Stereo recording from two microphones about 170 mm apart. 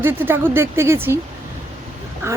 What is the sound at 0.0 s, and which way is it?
Speech, 10° right (ahead or behind).